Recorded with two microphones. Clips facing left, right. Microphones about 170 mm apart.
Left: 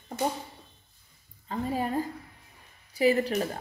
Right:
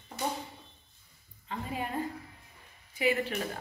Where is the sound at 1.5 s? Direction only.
35° left (ahead or behind).